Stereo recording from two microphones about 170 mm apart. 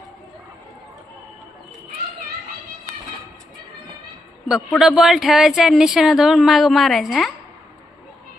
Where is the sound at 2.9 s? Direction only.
40° right (ahead or behind).